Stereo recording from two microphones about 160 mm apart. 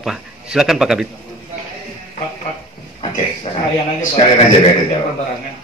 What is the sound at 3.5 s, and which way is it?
Speech, 35° left (ahead or behind).